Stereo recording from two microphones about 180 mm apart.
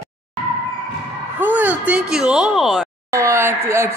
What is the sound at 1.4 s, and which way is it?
Speech, 10° right (ahead or behind).